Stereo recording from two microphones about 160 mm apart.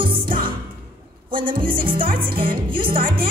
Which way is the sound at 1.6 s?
65° right (ahead or behind).